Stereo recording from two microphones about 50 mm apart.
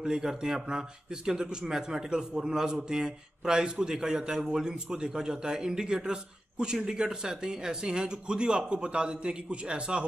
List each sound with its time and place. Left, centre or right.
0.0 s speech: centre